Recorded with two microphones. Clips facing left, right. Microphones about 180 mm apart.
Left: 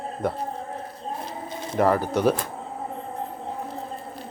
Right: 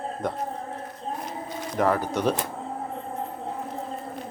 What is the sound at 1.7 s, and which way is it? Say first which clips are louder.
Speech: left 3 dB; 10° left (ahead or behind).